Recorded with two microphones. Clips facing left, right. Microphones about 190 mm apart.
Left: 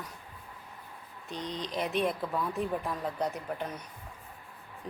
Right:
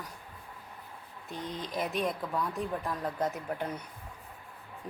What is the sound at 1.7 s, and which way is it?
Speech, centre (ahead or behind).